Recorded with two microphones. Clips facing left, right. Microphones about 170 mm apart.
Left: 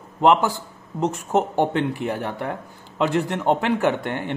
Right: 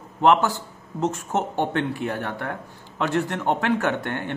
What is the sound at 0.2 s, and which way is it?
A man's voice, 15° left (ahead or behind).